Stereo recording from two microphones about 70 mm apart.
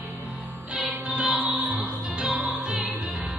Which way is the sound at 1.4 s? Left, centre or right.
Right.